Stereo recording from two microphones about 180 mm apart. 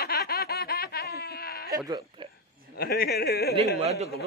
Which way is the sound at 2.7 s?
60° left (ahead or behind).